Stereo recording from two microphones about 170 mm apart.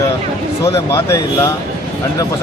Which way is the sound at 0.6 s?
15° left (ahead or behind).